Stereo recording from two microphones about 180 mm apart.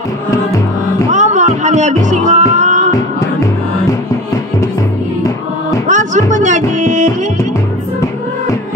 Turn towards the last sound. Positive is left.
turn(degrees=-45)  # may be behind; listen again after turning